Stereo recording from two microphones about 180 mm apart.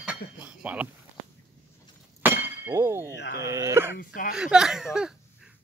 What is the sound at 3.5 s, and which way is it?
Speech, 15° right (ahead or behind).